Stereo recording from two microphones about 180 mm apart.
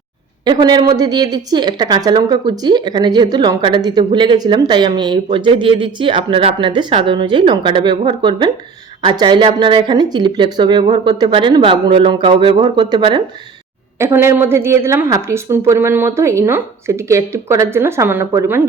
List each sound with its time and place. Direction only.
0.4 s a woman's voice: 25° right (ahead or behind)
14.0 s a woman's voice: 15° right (ahead or behind)